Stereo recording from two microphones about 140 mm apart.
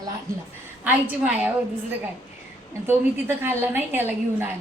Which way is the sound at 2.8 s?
15° right (ahead or behind).